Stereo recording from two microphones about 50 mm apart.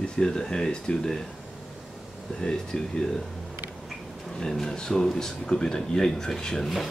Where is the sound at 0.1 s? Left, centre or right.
Centre.